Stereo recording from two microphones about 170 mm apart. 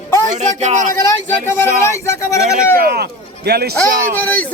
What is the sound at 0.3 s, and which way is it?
Speech, 45° right (ahead or behind).